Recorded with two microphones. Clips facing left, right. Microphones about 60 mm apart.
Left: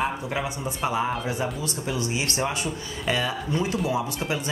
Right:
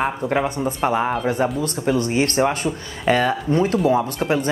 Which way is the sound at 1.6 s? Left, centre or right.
Right.